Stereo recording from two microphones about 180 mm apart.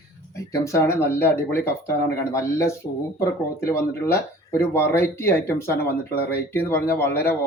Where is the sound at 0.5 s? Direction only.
15° left (ahead or behind).